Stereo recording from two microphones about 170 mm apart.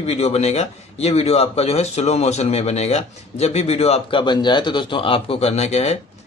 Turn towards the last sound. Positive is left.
turn(degrees=40)  # may be behind; listen again after turning